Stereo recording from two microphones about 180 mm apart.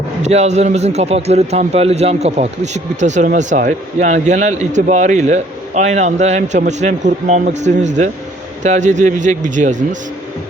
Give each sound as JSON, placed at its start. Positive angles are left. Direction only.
{"t": 0.2, "sound": "a man's voice", "side_deg": -40}